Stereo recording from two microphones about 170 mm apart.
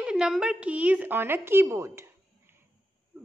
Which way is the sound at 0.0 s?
5° right (ahead or behind).